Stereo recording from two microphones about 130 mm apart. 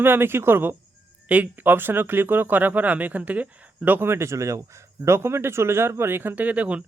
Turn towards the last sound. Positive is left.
turn(degrees=-10)  # may be behind; listen again after turning